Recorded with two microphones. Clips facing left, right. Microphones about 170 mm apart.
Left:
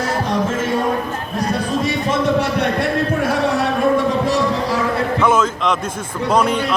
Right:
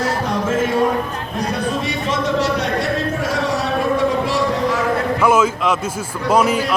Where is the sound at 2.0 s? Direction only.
55° left (ahead or behind).